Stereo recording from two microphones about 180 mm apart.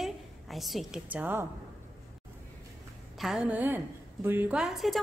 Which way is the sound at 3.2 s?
5° right (ahead or behind).